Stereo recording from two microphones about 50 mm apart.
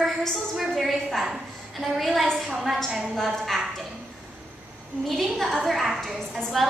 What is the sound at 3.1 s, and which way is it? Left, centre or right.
Speech, centre.